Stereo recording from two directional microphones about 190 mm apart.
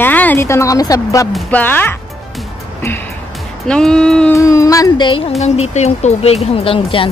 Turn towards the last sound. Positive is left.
turn(degrees=30)  # may be behind; listen again after turning